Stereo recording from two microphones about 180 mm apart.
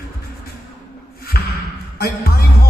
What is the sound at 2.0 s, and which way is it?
Music, 55° left (ahead or behind).